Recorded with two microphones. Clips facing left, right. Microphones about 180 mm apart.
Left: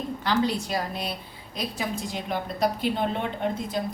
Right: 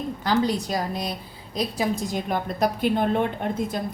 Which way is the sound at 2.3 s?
50° right (ahead or behind).